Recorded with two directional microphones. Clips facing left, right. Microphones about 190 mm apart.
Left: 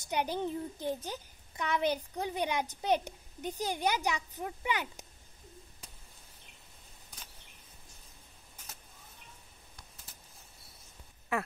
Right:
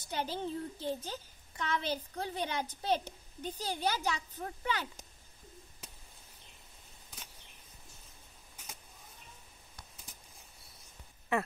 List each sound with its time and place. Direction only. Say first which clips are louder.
0.1 s a woman's voice: left 3 dB; 15° left (ahead or behind)
11.3 s speech: right 2 dB; centre (ahead or behind)